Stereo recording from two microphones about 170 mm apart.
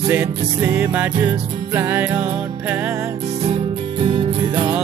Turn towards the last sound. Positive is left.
turn(degrees=-25)  # may be behind; listen again after turning